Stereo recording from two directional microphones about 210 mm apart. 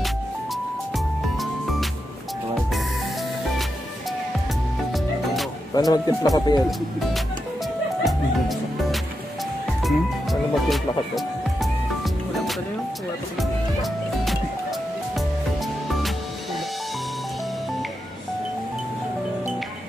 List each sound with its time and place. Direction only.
0.9 s music: centre (ahead or behind)
4.9 s music: centre (ahead or behind)
5.8 s speech: 20° left (ahead or behind)
8.0 s music: centre (ahead or behind)
15.1 s music: centre (ahead or behind)